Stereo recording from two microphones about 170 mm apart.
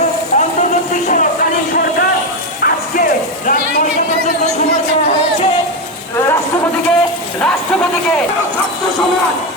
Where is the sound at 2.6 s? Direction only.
55° left (ahead or behind).